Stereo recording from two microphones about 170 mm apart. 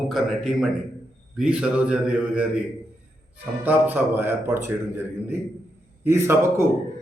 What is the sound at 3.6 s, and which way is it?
A man's voice, 10° right (ahead or behind).